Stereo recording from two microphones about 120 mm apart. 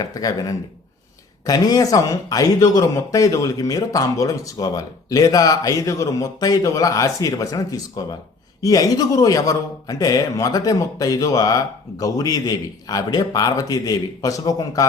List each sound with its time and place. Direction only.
0.0 s a man's voice: 30° left (ahead or behind)